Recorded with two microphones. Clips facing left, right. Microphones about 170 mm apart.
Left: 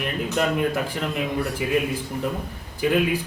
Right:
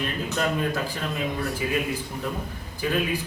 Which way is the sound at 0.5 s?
20° left (ahead or behind).